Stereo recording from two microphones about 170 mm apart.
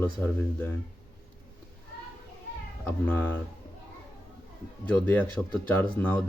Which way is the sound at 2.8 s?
10° left (ahead or behind).